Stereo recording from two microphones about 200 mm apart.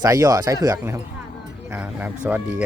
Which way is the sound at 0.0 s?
15° right (ahead or behind).